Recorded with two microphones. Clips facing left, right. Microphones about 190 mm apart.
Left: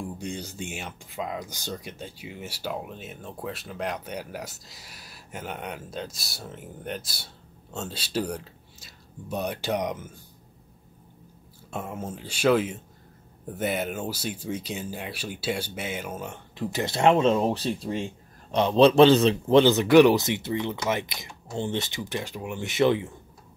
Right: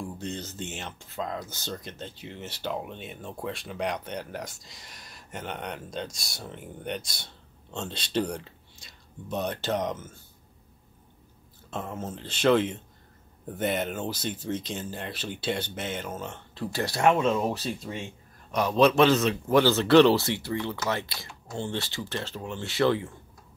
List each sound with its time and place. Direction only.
0.0 s speech: 10° left (ahead or behind)
11.7 s a man's voice: 10° left (ahead or behind)